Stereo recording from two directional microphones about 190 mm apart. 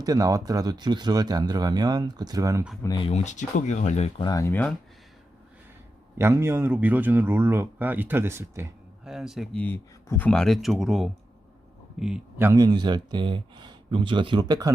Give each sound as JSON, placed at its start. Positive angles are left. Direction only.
{"t": 0.0, "sound": "speech", "side_deg": -20}
{"t": 2.8, "sound": "speech", "side_deg": 20}
{"t": 3.1, "sound": "speech", "side_deg": 40}
{"t": 4.2, "sound": "speech", "side_deg": 20}
{"t": 6.1, "sound": "a man's voice", "side_deg": -15}
{"t": 9.0, "sound": "speech", "side_deg": 0}